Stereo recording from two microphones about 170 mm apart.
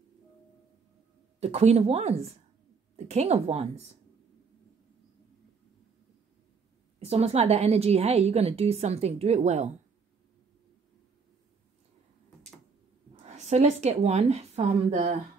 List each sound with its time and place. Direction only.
1.4 s a woman's voice: 40° right (ahead or behind)
7.0 s a woman's voice: 35° right (ahead or behind)
13.2 s speech: 40° right (ahead or behind)